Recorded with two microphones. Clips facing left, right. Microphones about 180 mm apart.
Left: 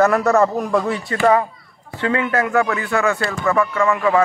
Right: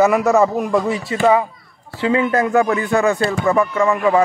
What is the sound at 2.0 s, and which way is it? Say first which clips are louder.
Speech: right 3 dB; 20° right (ahead or behind).